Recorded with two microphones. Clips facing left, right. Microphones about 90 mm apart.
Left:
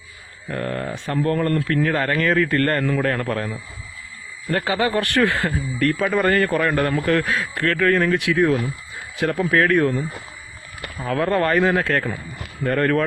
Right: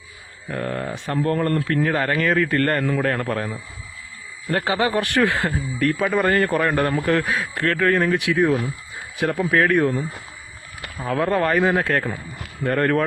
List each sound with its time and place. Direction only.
0.4 s a man's voice: 10° right (ahead or behind)
10.9 s speech: 15° right (ahead or behind)
11.2 s speech: 5° right (ahead or behind)
11.6 s a man's voice: 15° right (ahead or behind)